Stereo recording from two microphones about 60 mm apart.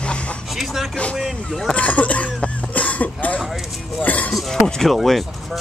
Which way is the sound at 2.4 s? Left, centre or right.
Left.